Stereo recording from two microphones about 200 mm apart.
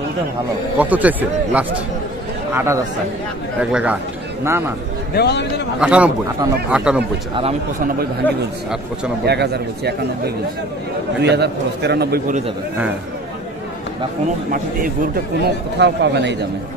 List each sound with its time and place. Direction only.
0.7 s speech: 10° right (ahead or behind)
5.1 s a man's voice: 55° left (ahead or behind)
5.8 s a man's voice: 5° right (ahead or behind)
9.2 s a man's voice: 55° right (ahead or behind)
15.4 s a man's voice: 60° right (ahead or behind)